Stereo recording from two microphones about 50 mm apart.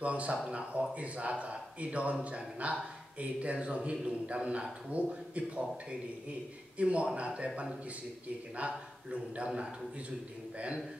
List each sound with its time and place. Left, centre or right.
0.0 s a man's voice: right